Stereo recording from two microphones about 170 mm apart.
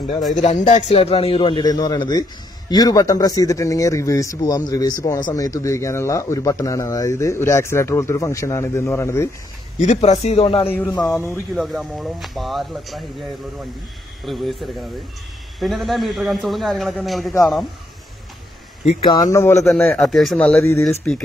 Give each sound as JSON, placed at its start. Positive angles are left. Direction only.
{"t": 0.4, "sound": "a man's voice", "side_deg": 40}
{"t": 9.8, "sound": "a man's voice", "side_deg": 45}
{"t": 11.1, "sound": "speech", "side_deg": 10}
{"t": 14.2, "sound": "speech", "side_deg": 0}
{"t": 19.3, "sound": "a man's voice", "side_deg": 15}
{"t": 20.0, "sound": "a man's voice", "side_deg": 0}